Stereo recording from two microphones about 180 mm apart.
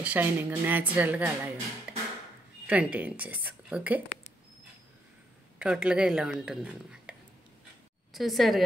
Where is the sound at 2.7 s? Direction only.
10° right (ahead or behind).